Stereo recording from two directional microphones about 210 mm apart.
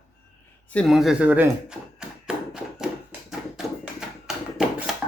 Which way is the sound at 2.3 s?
5° right (ahead or behind).